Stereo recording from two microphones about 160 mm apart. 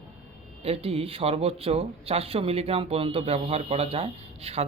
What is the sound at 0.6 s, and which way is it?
Speech, 40° right (ahead or behind).